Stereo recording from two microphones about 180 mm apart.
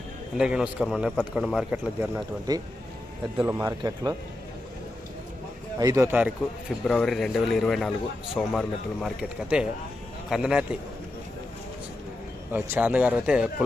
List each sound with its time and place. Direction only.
0.3 s a man's voice: 5° right (ahead or behind)
3.6 s speech: 20° right (ahead or behind)
5.8 s speech: 20° right (ahead or behind)
6.8 s a man's voice: centre (ahead or behind)
12.5 s speech: 10° right (ahead or behind)